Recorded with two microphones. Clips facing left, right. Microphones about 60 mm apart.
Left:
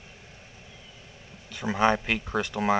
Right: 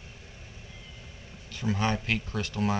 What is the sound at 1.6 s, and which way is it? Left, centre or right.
Speech, left.